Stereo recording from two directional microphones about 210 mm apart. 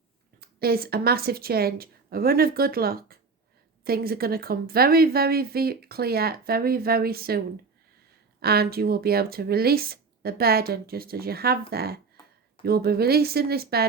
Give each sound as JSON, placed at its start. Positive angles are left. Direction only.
{"t": 0.3, "sound": "a woman's voice", "side_deg": -45}